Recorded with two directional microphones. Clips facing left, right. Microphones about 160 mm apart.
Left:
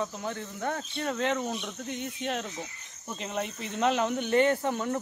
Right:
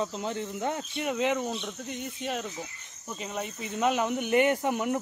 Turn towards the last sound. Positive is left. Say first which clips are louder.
# right 1 dB
turn(degrees=-15)  # may be behind; listen again after turning